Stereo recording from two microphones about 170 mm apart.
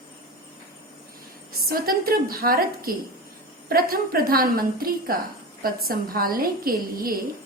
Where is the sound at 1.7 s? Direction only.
60° right (ahead or behind).